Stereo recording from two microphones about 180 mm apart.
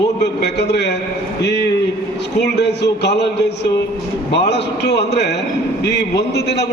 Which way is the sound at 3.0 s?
70° left (ahead or behind).